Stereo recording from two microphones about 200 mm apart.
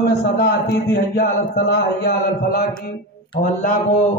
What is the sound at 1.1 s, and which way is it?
Speech, 55° left (ahead or behind).